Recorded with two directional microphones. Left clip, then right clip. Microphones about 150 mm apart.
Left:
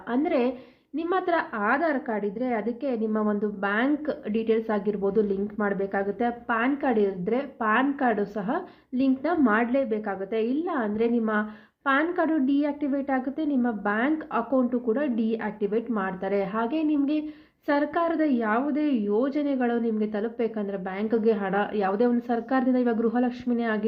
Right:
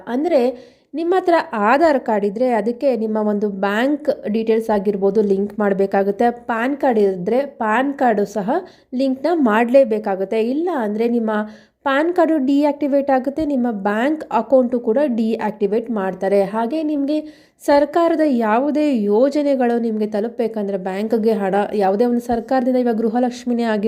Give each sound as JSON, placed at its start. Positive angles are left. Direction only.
{"t": 0.1, "sound": "a woman's voice", "side_deg": -45}
{"t": 17.7, "sound": "a woman's voice", "side_deg": -60}